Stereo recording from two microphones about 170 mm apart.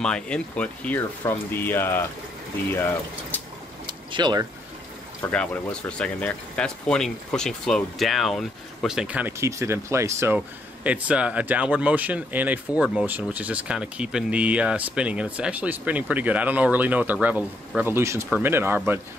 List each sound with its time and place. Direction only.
0.0 s speech: 5° left (ahead or behind)
3.8 s a sound: 25° right (ahead or behind)
5.2 s speech: 5° left (ahead or behind); by 18.9 s 10° right (ahead or behind)